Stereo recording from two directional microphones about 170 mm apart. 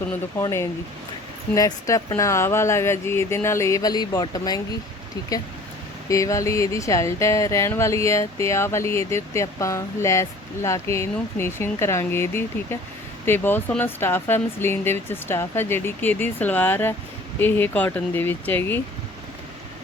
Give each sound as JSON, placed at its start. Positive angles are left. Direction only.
{"t": 0.1, "sound": "speech", "side_deg": 15}
{"t": 6.1, "sound": "speech", "side_deg": 20}